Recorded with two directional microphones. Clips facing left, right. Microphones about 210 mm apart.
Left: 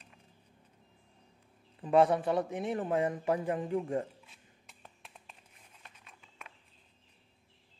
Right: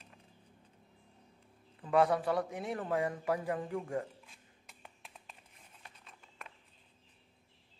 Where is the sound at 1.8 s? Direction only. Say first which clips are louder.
Left 3 dB; 25° left (ahead or behind).